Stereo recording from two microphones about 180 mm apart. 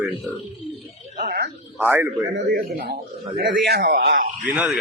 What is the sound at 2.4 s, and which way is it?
A man's voice, 60° right (ahead or behind).